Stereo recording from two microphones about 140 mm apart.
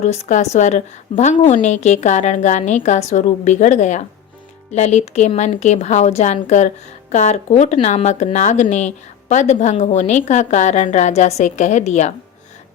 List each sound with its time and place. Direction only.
0.0 s a woman's voice: 55° left (ahead or behind)